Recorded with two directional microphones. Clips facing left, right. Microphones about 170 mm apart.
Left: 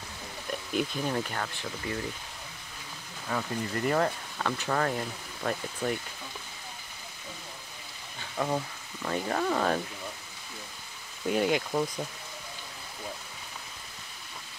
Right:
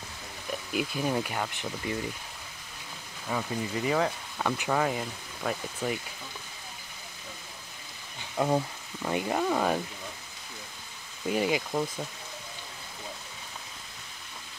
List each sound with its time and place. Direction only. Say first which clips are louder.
0.5 s speech: left 1 dB; 5° right (ahead or behind)
3.3 s speech: right 1 dB; 5° right (ahead or behind)
8.4 s speech: right 4 dB; 25° right (ahead or behind)
9.0 s speech: right 1 dB; 10° right (ahead or behind)
11.2 s speech: left 1 dB; centre (ahead or behind)